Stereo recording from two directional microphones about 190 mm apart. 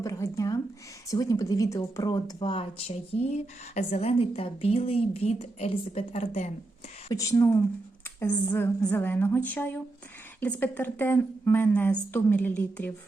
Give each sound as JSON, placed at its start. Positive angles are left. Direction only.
{"t": 0.0, "sound": "speech", "side_deg": 15}
{"t": 7.1, "sound": "a woman's voice", "side_deg": 15}